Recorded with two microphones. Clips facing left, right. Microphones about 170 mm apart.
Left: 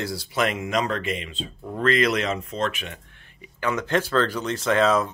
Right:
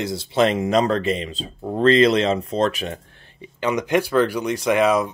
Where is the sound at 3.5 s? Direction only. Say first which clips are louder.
Right 4 dB; 15° right (ahead or behind).